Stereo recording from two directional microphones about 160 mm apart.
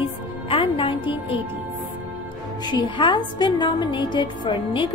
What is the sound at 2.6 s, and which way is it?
A woman's voice, 30° left (ahead or behind).